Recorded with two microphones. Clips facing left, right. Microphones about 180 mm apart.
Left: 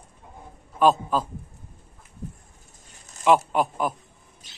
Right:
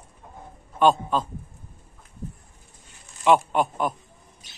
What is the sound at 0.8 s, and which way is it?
Speech, 5° left (ahead or behind).